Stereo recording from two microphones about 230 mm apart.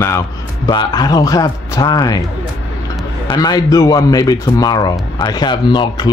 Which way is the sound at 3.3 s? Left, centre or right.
Centre.